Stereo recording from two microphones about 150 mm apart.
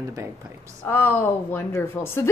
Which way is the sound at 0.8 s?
15° left (ahead or behind).